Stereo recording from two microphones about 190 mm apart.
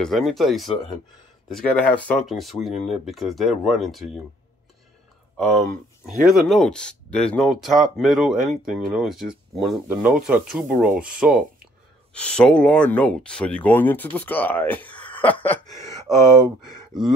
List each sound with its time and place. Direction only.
0.0 s speech: centre (ahead or behind)
5.4 s speech: 5° left (ahead or behind)
16.6 s speech: centre (ahead or behind)